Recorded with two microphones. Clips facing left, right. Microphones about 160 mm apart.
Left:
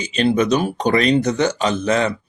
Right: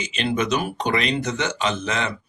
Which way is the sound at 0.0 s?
35° left (ahead or behind).